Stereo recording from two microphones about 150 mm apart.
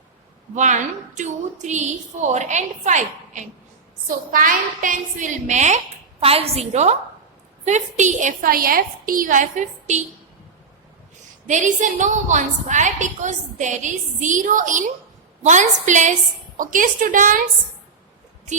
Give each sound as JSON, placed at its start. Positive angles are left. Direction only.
{"t": 0.5, "sound": "a woman's voice", "side_deg": -55}
{"t": 4.3, "sound": "a woman's voice", "side_deg": -70}
{"t": 11.4, "sound": "a woman's voice", "side_deg": -55}